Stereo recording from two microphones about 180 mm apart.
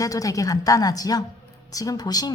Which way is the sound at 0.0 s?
20° left (ahead or behind).